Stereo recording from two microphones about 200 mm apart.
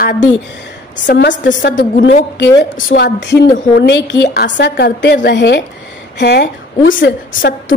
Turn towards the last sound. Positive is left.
turn(degrees=70)  # may be behind; listen again after turning